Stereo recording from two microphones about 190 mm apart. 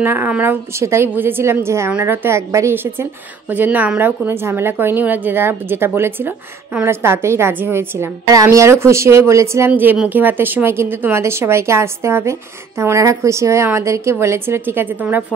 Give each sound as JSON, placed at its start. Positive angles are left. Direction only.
{"t": 0.0, "sound": "a woman's voice", "side_deg": -10}